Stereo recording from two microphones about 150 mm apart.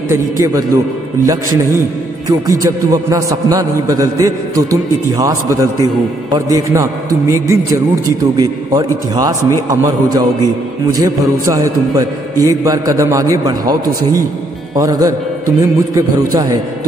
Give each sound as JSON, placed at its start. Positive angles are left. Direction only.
{"t": 0.1, "sound": "a man's voice", "side_deg": -20}